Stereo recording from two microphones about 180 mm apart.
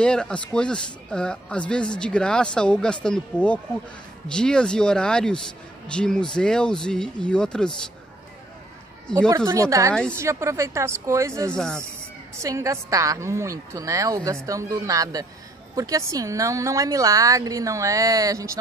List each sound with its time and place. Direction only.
0.0 s speech: 5° left (ahead or behind)
9.1 s speech: 5° left (ahead or behind)
9.5 s a woman's voice: 15° right (ahead or behind)
11.5 s speech: 5° left (ahead or behind)
12.4 s a woman's voice: 15° right (ahead or behind)